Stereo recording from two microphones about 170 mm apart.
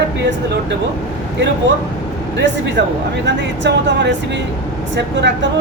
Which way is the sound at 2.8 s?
70° right (ahead or behind).